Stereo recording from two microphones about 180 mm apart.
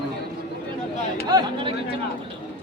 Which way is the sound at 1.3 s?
20° right (ahead or behind).